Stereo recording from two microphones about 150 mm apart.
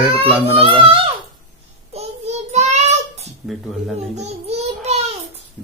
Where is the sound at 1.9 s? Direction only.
45° right (ahead or behind).